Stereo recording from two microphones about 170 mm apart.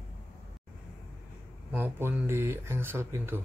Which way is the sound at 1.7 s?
10° right (ahead or behind).